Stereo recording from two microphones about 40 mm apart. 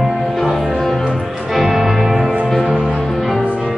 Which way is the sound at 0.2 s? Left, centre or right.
Centre.